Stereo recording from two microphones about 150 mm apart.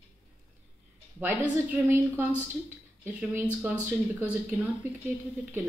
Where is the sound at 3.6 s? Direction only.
15° right (ahead or behind).